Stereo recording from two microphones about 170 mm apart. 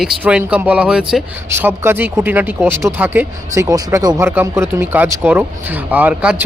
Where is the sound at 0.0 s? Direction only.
5° right (ahead or behind).